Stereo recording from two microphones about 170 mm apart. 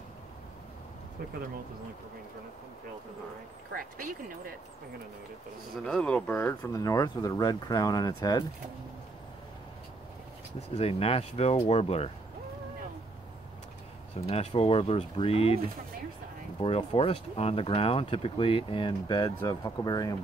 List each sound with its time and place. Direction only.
3.7 s speech: 55° right (ahead or behind)
5.9 s speech: 5° left (ahead or behind)
6.7 s speech: 20° left (ahead or behind)
10.7 s speech: 35° left (ahead or behind)
14.2 s speech: 35° left (ahead or behind)